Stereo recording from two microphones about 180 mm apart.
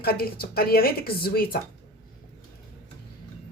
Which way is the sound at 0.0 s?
55° left (ahead or behind).